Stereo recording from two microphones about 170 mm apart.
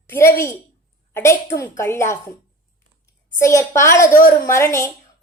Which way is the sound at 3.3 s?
15° left (ahead or behind).